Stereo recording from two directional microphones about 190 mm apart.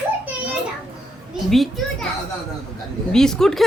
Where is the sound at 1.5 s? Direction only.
Centre (ahead or behind).